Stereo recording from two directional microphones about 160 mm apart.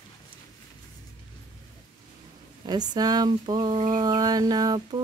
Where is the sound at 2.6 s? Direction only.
25° right (ahead or behind).